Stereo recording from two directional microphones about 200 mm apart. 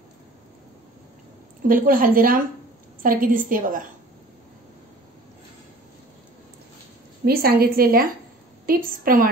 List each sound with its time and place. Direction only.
1.7 s a woman's voice: 45° right (ahead or behind)
7.2 s a woman's voice: 50° right (ahead or behind)